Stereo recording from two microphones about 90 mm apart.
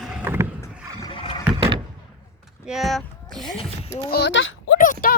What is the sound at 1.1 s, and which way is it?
Rowboat, 80° left.